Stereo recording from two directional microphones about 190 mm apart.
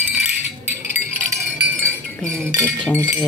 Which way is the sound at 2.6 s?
10° left (ahead or behind).